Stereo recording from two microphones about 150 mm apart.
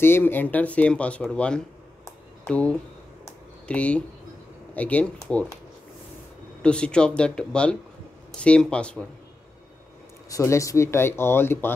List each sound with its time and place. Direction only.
0.0 s speech: 15° left (ahead or behind)
6.6 s speech: 5° left (ahead or behind)
10.3 s speech: 20° left (ahead or behind)